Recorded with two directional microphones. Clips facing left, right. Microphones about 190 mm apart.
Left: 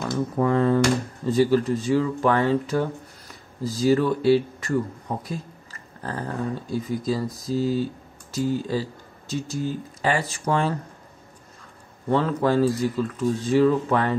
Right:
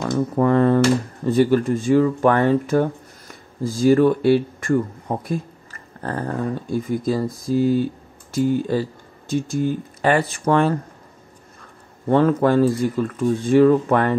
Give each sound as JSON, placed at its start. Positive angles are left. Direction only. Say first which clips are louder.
{"t": 0.0, "sound": "speech", "louder": "right 4 dB", "side_deg": -55}
{"t": 12.1, "sound": "speech", "louder": "right 5 dB", "side_deg": -50}